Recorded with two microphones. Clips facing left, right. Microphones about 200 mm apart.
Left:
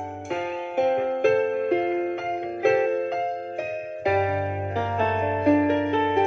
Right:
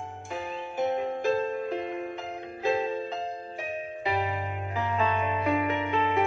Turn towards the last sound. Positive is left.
turn(degrees=30)  # may be behind; listen again after turning